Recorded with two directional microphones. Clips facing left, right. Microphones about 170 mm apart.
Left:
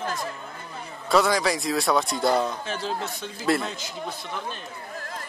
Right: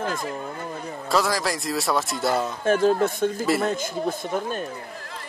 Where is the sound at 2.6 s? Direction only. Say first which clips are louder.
Right 11 dB; 50° right (ahead or behind).